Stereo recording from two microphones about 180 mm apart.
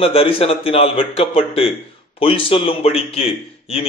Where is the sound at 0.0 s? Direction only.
30° left (ahead or behind).